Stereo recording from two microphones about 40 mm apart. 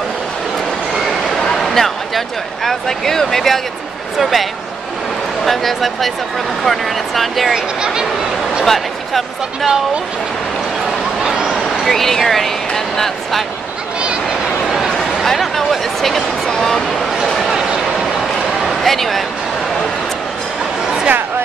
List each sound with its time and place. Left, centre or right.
1.6 s speech: centre
7.5 s speech: centre
8.6 s speech: centre
11.2 s a sound: centre
11.8 s speech: centre
15.0 s chatter: centre
15.7 s a sound: centre
17.4 s a sound: centre
18.8 s speech: centre